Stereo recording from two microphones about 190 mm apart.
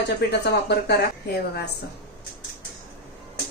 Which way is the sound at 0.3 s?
60° left (ahead or behind).